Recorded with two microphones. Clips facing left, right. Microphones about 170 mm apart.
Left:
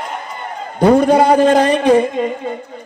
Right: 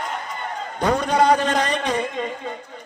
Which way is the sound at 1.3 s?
30° left (ahead or behind).